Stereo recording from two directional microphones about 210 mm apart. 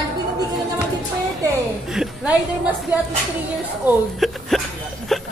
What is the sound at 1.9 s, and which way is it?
Speech, 5° right (ahead or behind).